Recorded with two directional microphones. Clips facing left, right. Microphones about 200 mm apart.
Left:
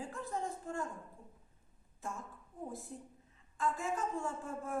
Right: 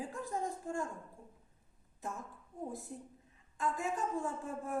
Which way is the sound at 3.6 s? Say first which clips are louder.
Even; 20° right (ahead or behind).